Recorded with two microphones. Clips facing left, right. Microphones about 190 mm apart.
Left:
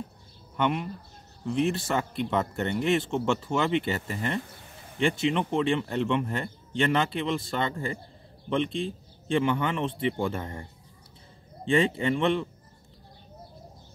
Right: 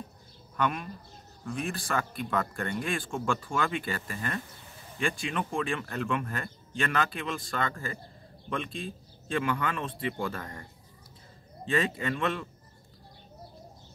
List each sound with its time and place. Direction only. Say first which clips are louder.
0.6 s speech: left 3 dB; 25° left (ahead or behind)